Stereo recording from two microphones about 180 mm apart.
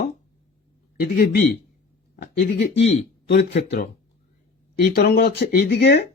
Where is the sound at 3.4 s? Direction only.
65° left (ahead or behind).